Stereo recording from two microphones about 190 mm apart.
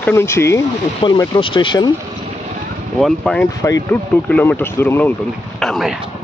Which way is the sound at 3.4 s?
20° left (ahead or behind).